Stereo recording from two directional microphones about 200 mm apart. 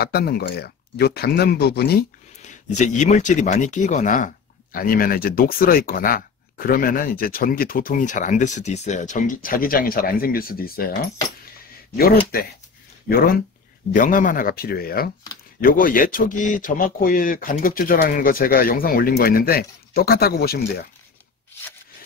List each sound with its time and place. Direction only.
0.0 s speech: 50° left (ahead or behind)
2.4 s speech: 35° left (ahead or behind)
12.3 s speech: 45° left (ahead or behind)
13.9 s speech: 40° left (ahead or behind)